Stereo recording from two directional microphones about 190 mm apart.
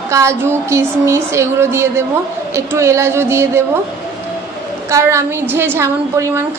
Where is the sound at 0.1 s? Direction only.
15° right (ahead or behind).